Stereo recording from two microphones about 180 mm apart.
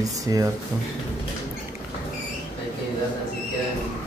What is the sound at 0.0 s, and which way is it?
Speech, 20° right (ahead or behind).